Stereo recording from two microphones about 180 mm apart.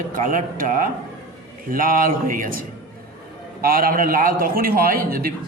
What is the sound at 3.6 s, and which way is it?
A man's voice, 55° right (ahead or behind).